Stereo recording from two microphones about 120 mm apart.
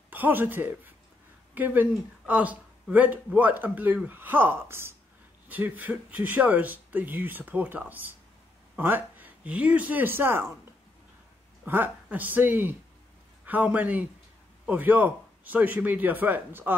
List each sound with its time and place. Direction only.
0.1 s speech: 15° right (ahead or behind)
11.6 s speech: 15° right (ahead or behind)